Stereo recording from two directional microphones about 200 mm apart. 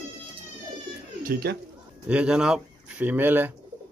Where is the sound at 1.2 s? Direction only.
50° right (ahead or behind).